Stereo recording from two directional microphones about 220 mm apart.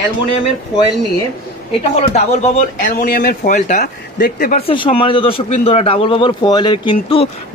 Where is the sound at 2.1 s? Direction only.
35° left (ahead or behind).